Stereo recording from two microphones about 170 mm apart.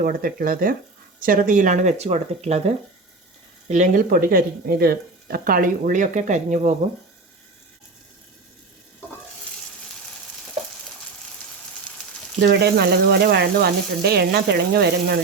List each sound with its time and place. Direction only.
0.0 s speech: 55° right (ahead or behind)
12.4 s speech: 75° right (ahead or behind)